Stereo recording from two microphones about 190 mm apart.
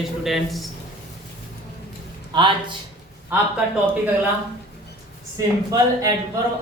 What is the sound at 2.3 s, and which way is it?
Speech, 25° right (ahead or behind).